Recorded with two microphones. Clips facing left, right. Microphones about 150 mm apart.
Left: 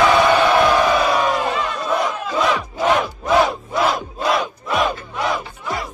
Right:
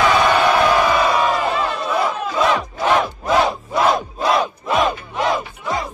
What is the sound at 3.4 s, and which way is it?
Crowd, 25° right (ahead or behind).